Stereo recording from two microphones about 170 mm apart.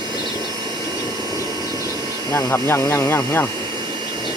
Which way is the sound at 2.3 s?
15° left (ahead or behind).